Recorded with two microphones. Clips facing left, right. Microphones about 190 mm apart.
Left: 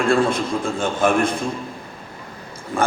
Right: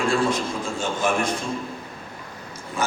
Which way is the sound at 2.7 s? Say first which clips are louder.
Left 5 dB; 50° left (ahead or behind).